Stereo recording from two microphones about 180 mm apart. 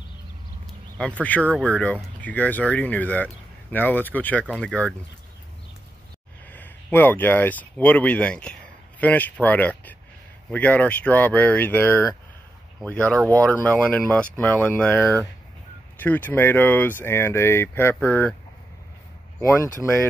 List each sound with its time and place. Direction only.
0.9 s speech: 5° left (ahead or behind)
6.5 s speech: 10° left (ahead or behind)
19.4 s speech: 15° left (ahead or behind)